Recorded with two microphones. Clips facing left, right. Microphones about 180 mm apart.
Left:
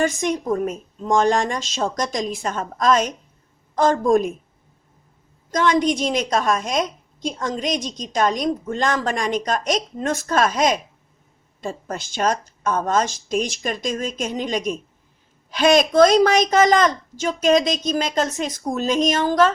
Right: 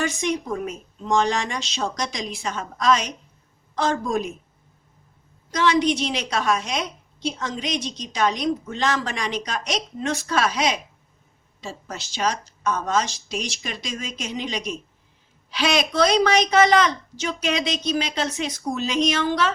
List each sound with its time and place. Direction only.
0.0 s a woman's voice: 50° left (ahead or behind)
5.5 s a woman's voice: 50° left (ahead or behind)